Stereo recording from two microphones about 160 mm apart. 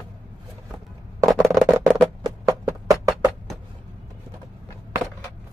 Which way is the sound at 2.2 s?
20° right (ahead or behind).